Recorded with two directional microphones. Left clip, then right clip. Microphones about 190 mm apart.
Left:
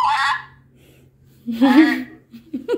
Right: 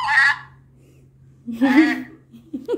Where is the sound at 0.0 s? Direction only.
15° right (ahead or behind).